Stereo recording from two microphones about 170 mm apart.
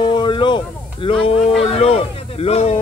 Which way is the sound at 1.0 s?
30° left (ahead or behind).